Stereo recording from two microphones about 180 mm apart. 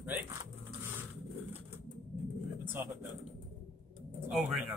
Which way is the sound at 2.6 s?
10° right (ahead or behind).